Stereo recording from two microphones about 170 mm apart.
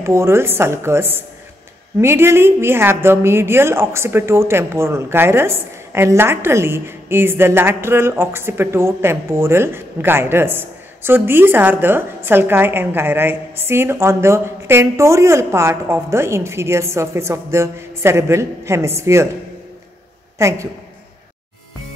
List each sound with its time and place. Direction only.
0.0 s a woman's voice: 15° right (ahead or behind)
20.3 s a woman's voice: 15° right (ahead or behind)